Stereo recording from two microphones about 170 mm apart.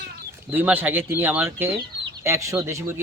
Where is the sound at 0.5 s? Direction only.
10° right (ahead or behind).